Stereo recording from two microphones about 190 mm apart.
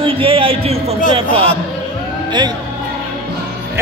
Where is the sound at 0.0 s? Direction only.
30° right (ahead or behind).